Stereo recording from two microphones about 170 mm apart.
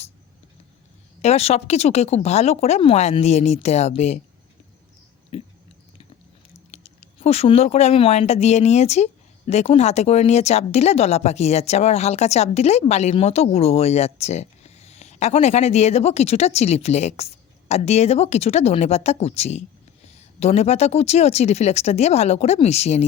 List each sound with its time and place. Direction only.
1.2 s speech: 40° left (ahead or behind)
5.3 s chewing: 35° left (ahead or behind)
6.7 s speech: 40° left (ahead or behind)